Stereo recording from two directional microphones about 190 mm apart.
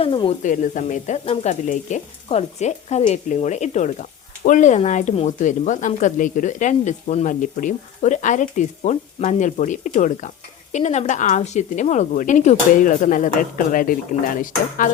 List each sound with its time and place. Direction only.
0.0 s speech: 25° left (ahead or behind)
0.4 s speech: 40° left (ahead or behind)